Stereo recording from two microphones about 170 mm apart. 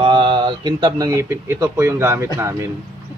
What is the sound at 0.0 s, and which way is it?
Speech, 30° right (ahead or behind).